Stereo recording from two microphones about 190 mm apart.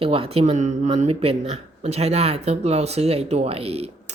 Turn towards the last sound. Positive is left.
turn(degrees=-30)  # may be behind; listen again after turning